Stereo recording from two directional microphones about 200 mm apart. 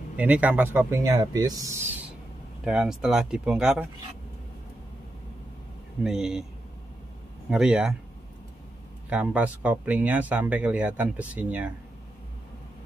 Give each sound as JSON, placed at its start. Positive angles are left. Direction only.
{"t": 0.2, "sound": "speech", "side_deg": -5}
{"t": 2.6, "sound": "speech", "side_deg": -5}
{"t": 6.0, "sound": "speech", "side_deg": 0}
{"t": 7.4, "sound": "speech", "side_deg": -5}
{"t": 9.1, "sound": "speech", "side_deg": -5}